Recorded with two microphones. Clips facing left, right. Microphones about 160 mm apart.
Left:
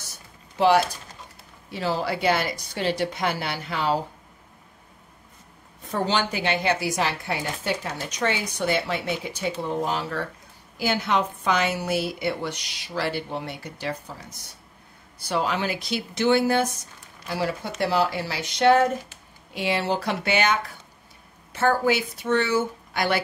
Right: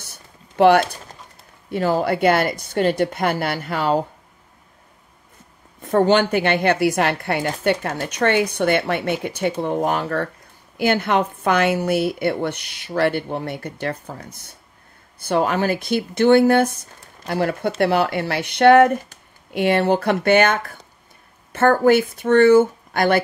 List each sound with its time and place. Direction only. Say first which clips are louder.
0.0 s a sound: right 2 dB; 60° right (ahead or behind)
1.7 s a woman's voice: right 7 dB; 50° right (ahead or behind)
5.8 s a woman's voice: right 9 dB; 55° right (ahead or behind)